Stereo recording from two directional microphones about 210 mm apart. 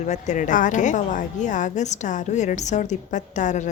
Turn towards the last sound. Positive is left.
turn(degrees=35)  # may be behind; listen again after turning